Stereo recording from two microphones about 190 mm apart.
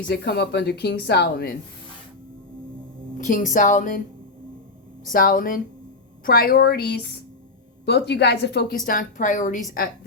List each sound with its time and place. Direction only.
0.1 s speech: 60° left (ahead or behind)
3.2 s music: 40° left (ahead or behind)
3.5 s a woman's voice: 40° left (ahead or behind)
5.1 s a woman's voice: 45° left (ahead or behind); by 8.6 s 60° left (ahead or behind)
8.9 s a woman's voice: 45° left (ahead or behind)